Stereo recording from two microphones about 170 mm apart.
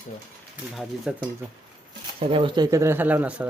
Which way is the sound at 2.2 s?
30° right (ahead or behind).